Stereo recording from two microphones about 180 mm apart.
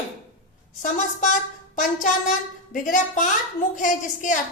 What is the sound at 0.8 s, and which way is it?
Speech, 45° left (ahead or behind).